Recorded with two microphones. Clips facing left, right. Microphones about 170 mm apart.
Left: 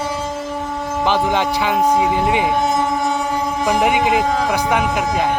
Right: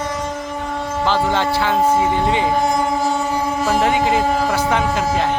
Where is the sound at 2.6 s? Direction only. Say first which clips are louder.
Even; centre (ahead or behind).